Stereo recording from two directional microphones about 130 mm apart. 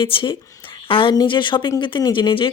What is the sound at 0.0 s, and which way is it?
Speech, 40° left (ahead or behind).